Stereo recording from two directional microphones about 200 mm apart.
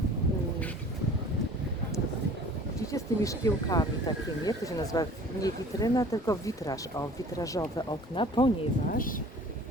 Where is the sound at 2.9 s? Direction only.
15° left (ahead or behind).